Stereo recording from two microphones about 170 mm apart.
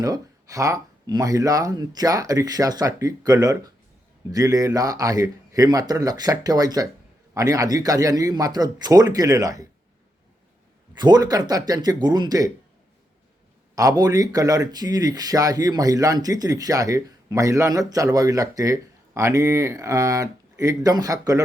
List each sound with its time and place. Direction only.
0.0 s speech: 20° right (ahead or behind)
10.9 s speech: 25° right (ahead or behind)
13.7 s speech: 20° right (ahead or behind)